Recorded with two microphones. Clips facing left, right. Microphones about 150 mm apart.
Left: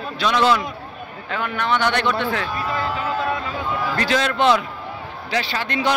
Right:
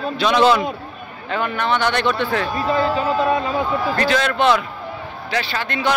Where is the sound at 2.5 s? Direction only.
30° right (ahead or behind).